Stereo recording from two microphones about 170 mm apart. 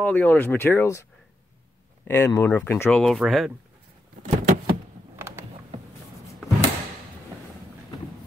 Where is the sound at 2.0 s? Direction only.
15° left (ahead or behind); by 3.5 s centre (ahead or behind).